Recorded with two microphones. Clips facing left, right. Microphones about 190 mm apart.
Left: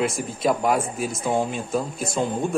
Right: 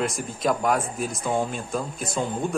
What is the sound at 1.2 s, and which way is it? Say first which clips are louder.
Speech: left 2 dB; 15° left (ahead or behind).